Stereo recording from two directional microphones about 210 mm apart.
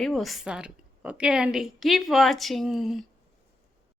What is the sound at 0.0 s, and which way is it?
A woman's voice, centre (ahead or behind).